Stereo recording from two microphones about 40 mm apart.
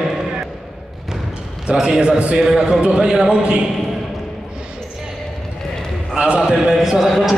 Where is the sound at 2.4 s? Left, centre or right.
Centre.